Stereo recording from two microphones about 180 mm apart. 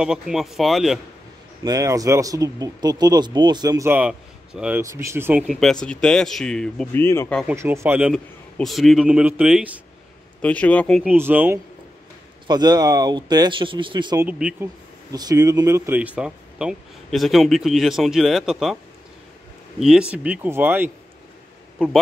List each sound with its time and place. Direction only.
0.0 s speech: 5° right (ahead or behind)
1.6 s speech: 20° right (ahead or behind)
5.5 s speech: centre (ahead or behind)
7.4 s speech: 15° right (ahead or behind)
8.1 s speech: centre (ahead or behind)
10.4 s speech: 5° left (ahead or behind)
11.1 s speech: 10° right (ahead or behind)
12.4 s speech: 25° right (ahead or behind)
14.2 s speech: 10° right (ahead or behind)
15.1 s speech: 20° right (ahead or behind); by 18.8 s centre (ahead or behind)
19.8 s speech: 5° right (ahead or behind)